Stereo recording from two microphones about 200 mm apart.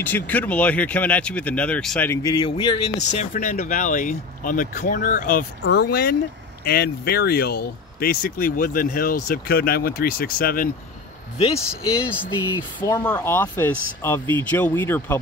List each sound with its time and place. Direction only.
0.0 s speech: 10° left (ahead or behind)
2.3 s speech: 25° left (ahead or behind)
3.1 s speech: 40° left (ahead or behind)
5.6 s speech: 55° left (ahead or behind)
11.3 s speech: 30° left (ahead or behind)
12.5 s speech: 15° left (ahead or behind)